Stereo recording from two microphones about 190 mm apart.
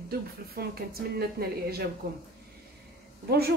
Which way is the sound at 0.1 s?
55° right (ahead or behind).